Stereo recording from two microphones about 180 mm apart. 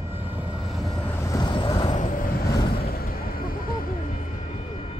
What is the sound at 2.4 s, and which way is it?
Vehicle, 20° left (ahead or behind).